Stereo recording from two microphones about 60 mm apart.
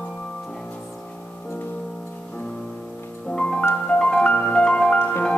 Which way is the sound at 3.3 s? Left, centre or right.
Centre.